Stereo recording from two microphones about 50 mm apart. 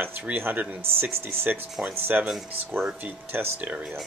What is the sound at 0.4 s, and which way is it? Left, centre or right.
Speech, right.